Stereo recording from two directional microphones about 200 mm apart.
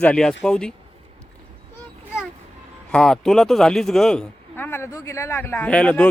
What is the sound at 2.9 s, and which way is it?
Speech, 5° left (ahead or behind).